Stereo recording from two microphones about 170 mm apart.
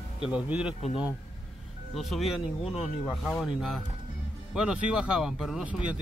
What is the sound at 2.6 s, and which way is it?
Speech, 35° left (ahead or behind).